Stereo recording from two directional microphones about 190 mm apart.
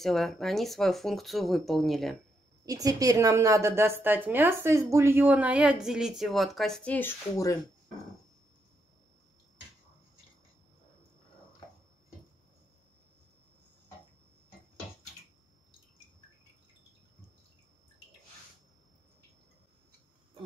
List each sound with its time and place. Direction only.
0.0 s speech: centre (ahead or behind)
2.6 s a woman's voice: 20° right (ahead or behind); by 7.5 s 15° left (ahead or behind)